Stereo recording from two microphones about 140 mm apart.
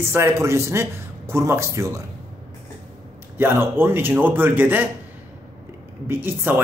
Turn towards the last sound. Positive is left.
turn(degrees=-15)  # may be behind; listen again after turning